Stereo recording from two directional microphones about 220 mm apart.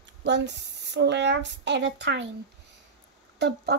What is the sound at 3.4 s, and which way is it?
Speech, 50° right (ahead or behind).